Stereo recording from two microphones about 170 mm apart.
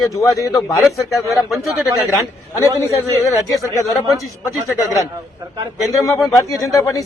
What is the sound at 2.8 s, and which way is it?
Speech, 20° left (ahead or behind).